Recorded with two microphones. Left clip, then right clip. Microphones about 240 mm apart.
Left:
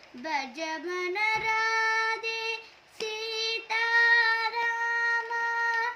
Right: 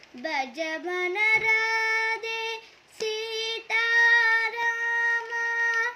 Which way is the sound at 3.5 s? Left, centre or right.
Centre.